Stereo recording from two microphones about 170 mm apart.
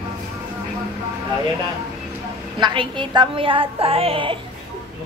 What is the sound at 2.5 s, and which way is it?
A woman's voice, 25° right (ahead or behind).